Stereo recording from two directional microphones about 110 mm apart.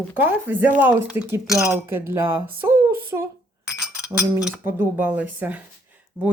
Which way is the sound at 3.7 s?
5° right (ahead or behind).